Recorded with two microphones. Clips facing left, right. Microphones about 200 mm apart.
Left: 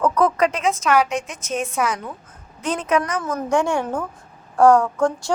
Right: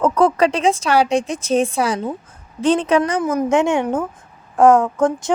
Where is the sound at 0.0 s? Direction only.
30° right (ahead or behind).